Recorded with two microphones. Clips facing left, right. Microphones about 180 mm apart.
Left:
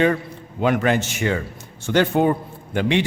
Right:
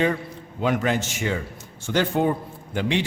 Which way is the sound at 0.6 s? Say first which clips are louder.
Left 4 dB; 65° left (ahead or behind).